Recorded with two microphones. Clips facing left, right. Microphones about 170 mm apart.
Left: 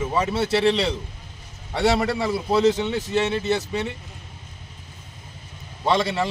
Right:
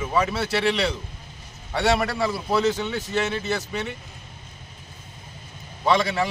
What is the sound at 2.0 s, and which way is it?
A man's voice, 25° left (ahead or behind).